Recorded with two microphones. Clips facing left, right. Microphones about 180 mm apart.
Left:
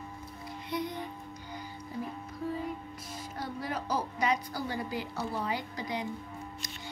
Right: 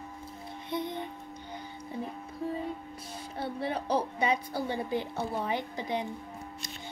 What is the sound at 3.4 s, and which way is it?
Music, 30° right (ahead or behind).